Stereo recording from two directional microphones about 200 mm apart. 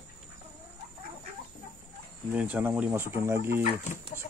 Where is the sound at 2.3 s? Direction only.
5° right (ahead or behind).